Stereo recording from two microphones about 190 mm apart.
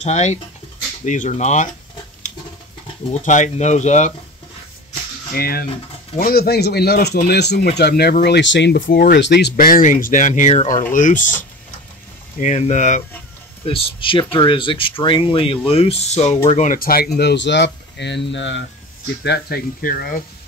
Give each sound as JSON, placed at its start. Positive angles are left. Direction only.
{"t": 0.0, "sound": "speech", "side_deg": 35}
{"t": 3.1, "sound": "speech", "side_deg": 40}
{"t": 5.3, "sound": "speech", "side_deg": 50}
{"t": 8.9, "sound": "speech", "side_deg": 50}
{"t": 9.2, "sound": "speech", "side_deg": 60}
{"t": 13.7, "sound": "speech", "side_deg": 30}
{"t": 19.2, "sound": "speech", "side_deg": 55}